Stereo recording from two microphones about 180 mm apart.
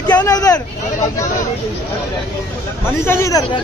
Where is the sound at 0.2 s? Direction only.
20° left (ahead or behind).